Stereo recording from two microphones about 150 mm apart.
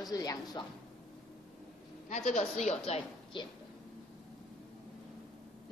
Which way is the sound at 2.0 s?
50° left (ahead or behind).